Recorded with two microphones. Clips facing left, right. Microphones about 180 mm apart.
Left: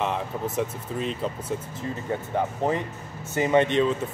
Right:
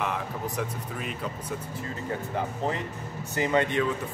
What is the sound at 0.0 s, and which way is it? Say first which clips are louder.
Speech: left 3 dB; 20° left (ahead or behind).